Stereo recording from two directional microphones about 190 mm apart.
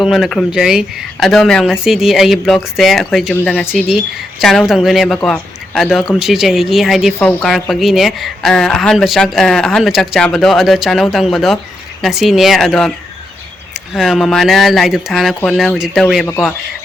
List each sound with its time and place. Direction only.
0.0 s speech: centre (ahead or behind)
13.9 s speech: centre (ahead or behind)